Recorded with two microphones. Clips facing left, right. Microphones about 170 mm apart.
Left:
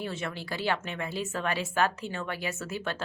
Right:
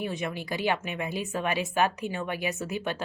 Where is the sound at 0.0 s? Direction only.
15° right (ahead or behind).